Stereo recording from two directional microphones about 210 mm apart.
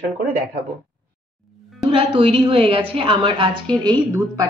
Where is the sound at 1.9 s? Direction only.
25° right (ahead or behind).